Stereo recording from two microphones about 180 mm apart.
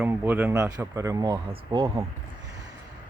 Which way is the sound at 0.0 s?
10° right (ahead or behind).